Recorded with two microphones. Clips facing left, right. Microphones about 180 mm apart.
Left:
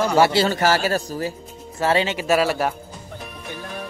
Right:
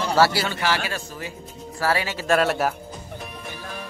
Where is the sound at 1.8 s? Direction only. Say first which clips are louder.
Left 4 dB; 25° left (ahead or behind).